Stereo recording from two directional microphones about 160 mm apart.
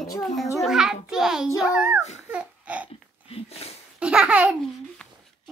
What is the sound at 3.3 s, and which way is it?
Speech, 40° left (ahead or behind).